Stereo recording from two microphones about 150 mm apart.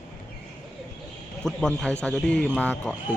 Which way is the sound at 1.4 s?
5° left (ahead or behind).